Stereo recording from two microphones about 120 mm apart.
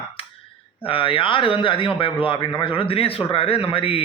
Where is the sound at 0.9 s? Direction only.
45° left (ahead or behind).